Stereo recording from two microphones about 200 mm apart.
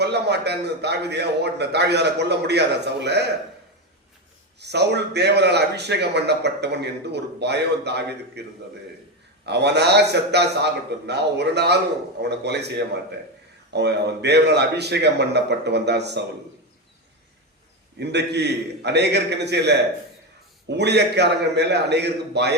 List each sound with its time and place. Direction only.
0.0 s a man's voice: 55° right (ahead or behind)
4.6 s a man's voice: 55° right (ahead or behind)
9.5 s a man's voice: 55° right (ahead or behind)
18.0 s a man's voice: 55° right (ahead or behind)